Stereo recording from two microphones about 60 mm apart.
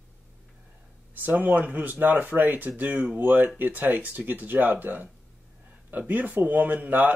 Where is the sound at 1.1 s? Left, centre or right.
Right.